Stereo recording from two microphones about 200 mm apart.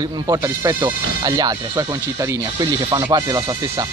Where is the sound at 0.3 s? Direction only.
15° right (ahead or behind).